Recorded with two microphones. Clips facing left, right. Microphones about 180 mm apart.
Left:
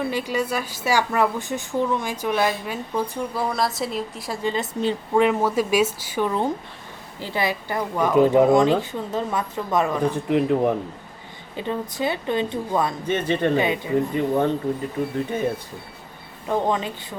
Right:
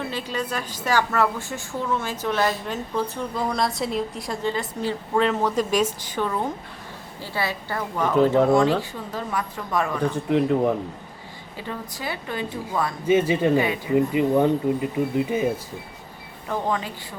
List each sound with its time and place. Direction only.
0.1 s a woman's voice: 10° left (ahead or behind)
4.4 s a woman's voice: 20° left (ahead or behind)
10.2 s speech: centre (ahead or behind)
11.5 s speech: 20° left (ahead or behind)
13.1 s speech: 10° right (ahead or behind)
16.5 s speech: 20° left (ahead or behind)